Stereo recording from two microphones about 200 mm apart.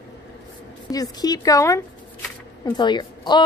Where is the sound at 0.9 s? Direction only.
20° left (ahead or behind).